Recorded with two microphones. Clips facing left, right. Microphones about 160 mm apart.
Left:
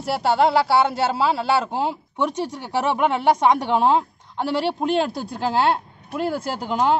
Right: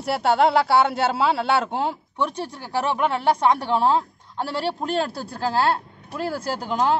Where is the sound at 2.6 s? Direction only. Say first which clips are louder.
Left 1 dB; 20° left (ahead or behind).